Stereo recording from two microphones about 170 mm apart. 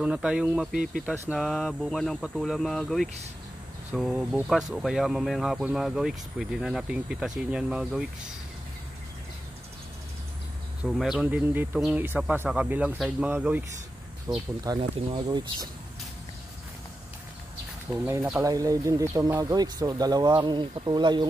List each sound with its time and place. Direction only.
0.0 s speech: 5° right (ahead or behind)
10.8 s speech: centre (ahead or behind)
14.8 s speech: 35° right (ahead or behind)
15.2 s speech: 25° right (ahead or behind)
17.9 s speech: 15° right (ahead or behind)